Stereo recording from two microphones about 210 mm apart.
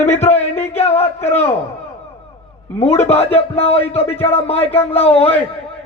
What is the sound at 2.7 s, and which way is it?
A man's voice, 30° left (ahead or behind).